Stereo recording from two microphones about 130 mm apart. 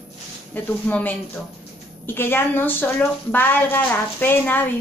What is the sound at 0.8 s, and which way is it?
A woman's voice, 10° left (ahead or behind).